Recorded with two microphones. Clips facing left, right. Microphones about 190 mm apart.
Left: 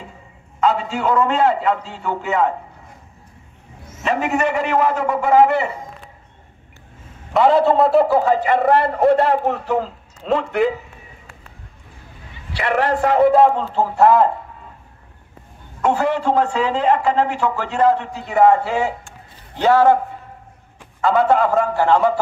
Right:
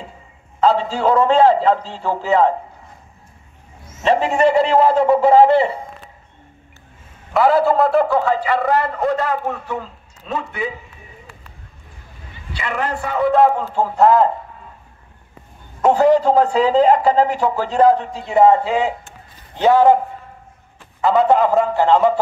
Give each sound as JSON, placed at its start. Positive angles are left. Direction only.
{"t": 0.6, "sound": "a man's voice", "side_deg": -35}
{"t": 4.0, "sound": "a man's voice", "side_deg": -30}
{"t": 7.3, "sound": "a man's voice", "side_deg": 0}
{"t": 8.2, "sound": "speech", "side_deg": 20}
{"t": 8.7, "sound": "a man's voice", "side_deg": 30}
{"t": 9.7, "sound": "a man's voice", "side_deg": 80}
{"t": 12.5, "sound": "a man's voice", "side_deg": 70}
{"t": 13.3, "sound": "a man's voice", "side_deg": 0}
{"t": 15.8, "sound": "a man's voice", "side_deg": -35}
{"t": 21.0, "sound": "a man's voice", "side_deg": -20}